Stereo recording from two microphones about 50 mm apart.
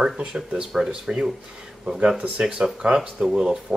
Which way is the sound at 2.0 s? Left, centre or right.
Right.